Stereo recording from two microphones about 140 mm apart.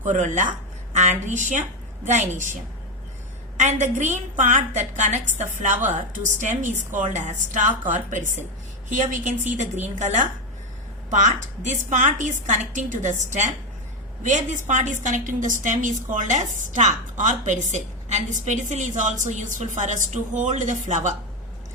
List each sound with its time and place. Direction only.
0.0 s a woman's voice: 65° right (ahead or behind)
3.6 s a woman's voice: 60° right (ahead or behind)